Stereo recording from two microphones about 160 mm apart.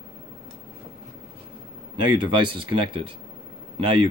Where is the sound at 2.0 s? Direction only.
30° right (ahead or behind).